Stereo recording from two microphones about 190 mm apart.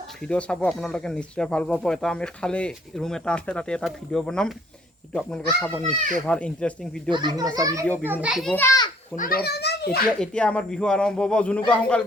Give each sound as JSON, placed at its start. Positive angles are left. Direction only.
{"t": 0.2, "sound": "speech", "side_deg": 5}
{"t": 7.1, "sound": "a child's voice", "side_deg": -20}
{"t": 8.5, "sound": "children playing", "side_deg": 15}
{"t": 9.1, "sound": "a child's voice", "side_deg": 50}
{"t": 10.2, "sound": "speech", "side_deg": 5}